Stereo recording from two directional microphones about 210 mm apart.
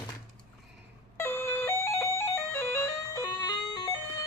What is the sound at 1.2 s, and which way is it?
Music, 10° left (ahead or behind).